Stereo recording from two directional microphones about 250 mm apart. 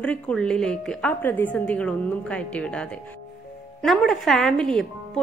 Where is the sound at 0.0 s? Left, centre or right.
Centre.